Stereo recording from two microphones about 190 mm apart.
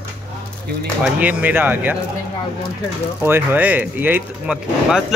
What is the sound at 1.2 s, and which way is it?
Speech, 10° right (ahead or behind).